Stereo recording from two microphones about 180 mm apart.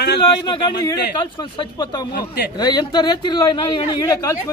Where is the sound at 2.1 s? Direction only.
65° left (ahead or behind).